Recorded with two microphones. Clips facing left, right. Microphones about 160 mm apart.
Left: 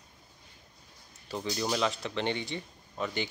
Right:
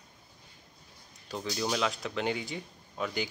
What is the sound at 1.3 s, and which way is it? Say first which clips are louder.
Speech: left 1 dB; centre (ahead or behind).